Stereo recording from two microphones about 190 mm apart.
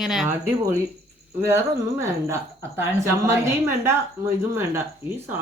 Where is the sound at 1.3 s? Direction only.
15° right (ahead or behind).